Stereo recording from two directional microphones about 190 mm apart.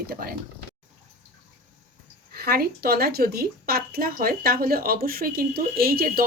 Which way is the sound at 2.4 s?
50° right (ahead or behind).